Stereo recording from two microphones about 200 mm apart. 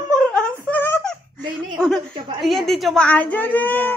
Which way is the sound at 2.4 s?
Centre (ahead or behind).